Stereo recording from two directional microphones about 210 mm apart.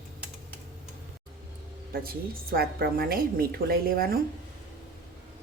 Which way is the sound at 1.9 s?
45° right (ahead or behind).